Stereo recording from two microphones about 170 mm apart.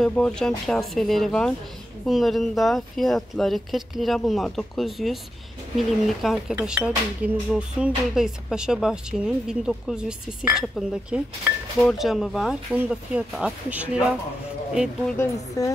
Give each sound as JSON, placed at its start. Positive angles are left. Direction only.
{"t": 0.0, "sound": "speech", "side_deg": 5}
{"t": 15.6, "sound": "a woman's voice", "side_deg": 20}